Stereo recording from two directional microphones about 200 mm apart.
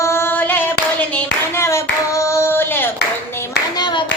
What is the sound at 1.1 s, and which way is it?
Hands, 10° left (ahead or behind).